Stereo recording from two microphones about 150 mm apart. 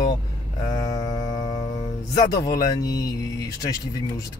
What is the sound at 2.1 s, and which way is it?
A man's voice, 25° left (ahead or behind).